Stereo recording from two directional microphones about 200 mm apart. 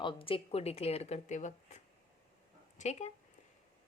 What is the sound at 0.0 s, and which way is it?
A woman's voice, 25° left (ahead or behind).